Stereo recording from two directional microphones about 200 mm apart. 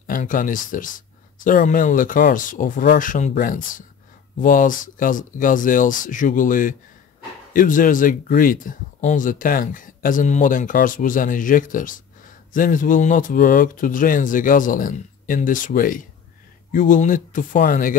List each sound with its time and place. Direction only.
0.0 s speech: 45° left (ahead or behind)